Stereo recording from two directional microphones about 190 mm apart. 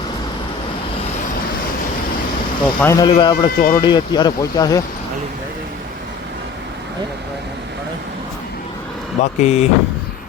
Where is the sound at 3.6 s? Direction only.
45° left (ahead or behind).